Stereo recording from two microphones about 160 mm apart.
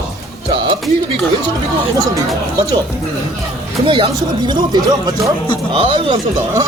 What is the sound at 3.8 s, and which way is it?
Speech, 30° right (ahead or behind).